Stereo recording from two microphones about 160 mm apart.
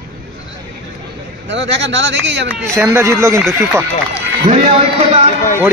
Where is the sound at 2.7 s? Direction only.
15° right (ahead or behind).